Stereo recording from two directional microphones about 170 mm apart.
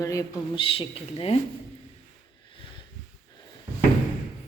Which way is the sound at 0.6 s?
35° left (ahead or behind).